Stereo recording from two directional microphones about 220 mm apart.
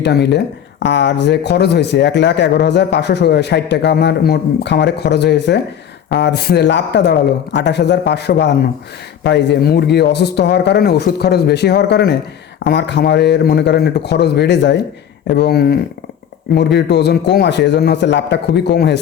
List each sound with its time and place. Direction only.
0.0 s speech: 50° left (ahead or behind)